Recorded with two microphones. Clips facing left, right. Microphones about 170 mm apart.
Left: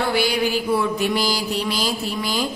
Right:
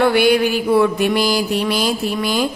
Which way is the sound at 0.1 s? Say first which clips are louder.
Right 6 dB; 60° right (ahead or behind).